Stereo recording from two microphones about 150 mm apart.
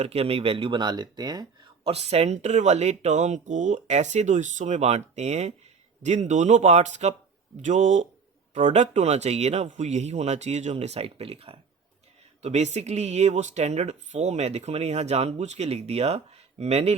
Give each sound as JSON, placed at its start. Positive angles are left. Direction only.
{"t": 0.0, "sound": "speech", "side_deg": -40}
{"t": 1.8, "sound": "speech", "side_deg": -45}